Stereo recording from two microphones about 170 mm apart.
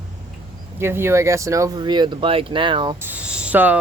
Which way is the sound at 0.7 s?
15° right (ahead or behind).